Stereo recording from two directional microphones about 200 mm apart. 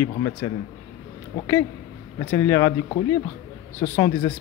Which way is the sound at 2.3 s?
15° left (ahead or behind).